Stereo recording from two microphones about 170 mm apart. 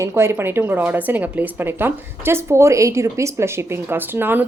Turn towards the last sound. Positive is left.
turn(degrees=-10)  # may be behind; listen again after turning